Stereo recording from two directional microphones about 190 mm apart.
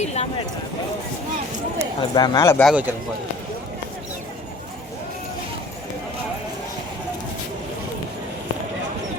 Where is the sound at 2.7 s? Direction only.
10° right (ahead or behind).